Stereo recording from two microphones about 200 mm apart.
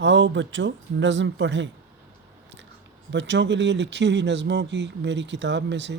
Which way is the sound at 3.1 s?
65° right (ahead or behind).